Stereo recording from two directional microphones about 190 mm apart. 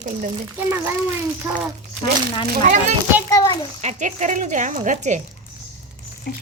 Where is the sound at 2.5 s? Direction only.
40° right (ahead or behind).